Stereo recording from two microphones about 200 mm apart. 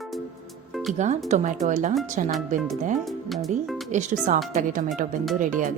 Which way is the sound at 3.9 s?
35° right (ahead or behind).